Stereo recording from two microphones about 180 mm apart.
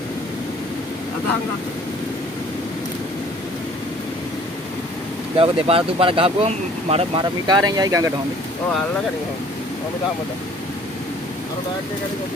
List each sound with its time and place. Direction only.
5.4 s speech: 30° right (ahead or behind)